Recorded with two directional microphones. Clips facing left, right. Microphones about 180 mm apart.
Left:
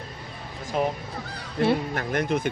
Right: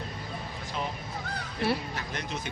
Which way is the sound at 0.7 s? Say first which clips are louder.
Left 9 dB; 50° left (ahead or behind).